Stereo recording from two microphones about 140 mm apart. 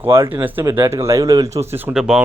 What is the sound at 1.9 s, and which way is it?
Speech, 5° right (ahead or behind).